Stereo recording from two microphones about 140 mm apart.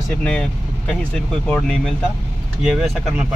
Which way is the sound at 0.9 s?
10° left (ahead or behind).